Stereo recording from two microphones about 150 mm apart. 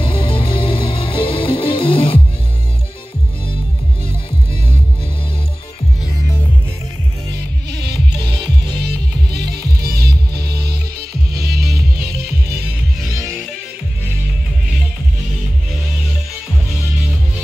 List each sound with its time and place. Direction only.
0.0 s music: 35° left (ahead or behind)
8.8 s music: 90° right